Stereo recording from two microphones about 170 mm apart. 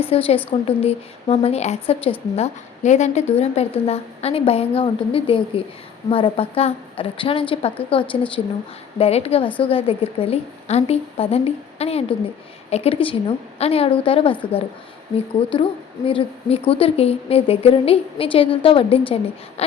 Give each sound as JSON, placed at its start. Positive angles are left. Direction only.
{"t": 0.0, "sound": "a woman's voice", "side_deg": 35}